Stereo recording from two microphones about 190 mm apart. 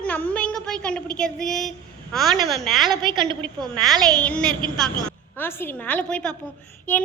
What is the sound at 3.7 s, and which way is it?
A woman's voice, centre (ahead or behind).